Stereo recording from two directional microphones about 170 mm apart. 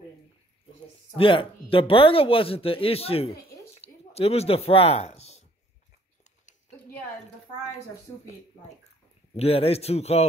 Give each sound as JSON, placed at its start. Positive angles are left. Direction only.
{"t": 1.1, "sound": "speech", "side_deg": 30}
{"t": 3.7, "sound": "a sound", "side_deg": 35}
{"t": 9.3, "sound": "speech", "side_deg": 35}